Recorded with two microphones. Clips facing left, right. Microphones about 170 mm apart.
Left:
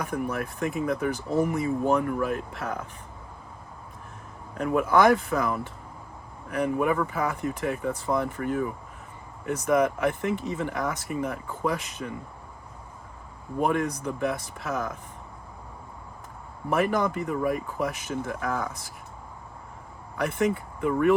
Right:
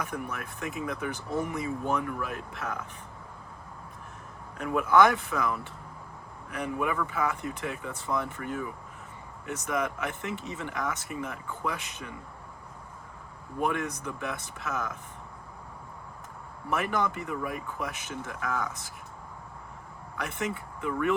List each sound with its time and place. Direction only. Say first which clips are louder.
0.0 s speech: left 6 dB; 45° left (ahead or behind)
4.5 s speech: left 1 dB; 45° left (ahead or behind)
13.6 s speech: left 5 dB; 45° left (ahead or behind)
16.6 s speech: left 5 dB; 50° left (ahead or behind)
20.2 s speech: left 8 dB; 50° left (ahead or behind)